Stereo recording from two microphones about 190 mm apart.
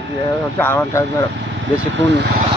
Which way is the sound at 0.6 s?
10° left (ahead or behind).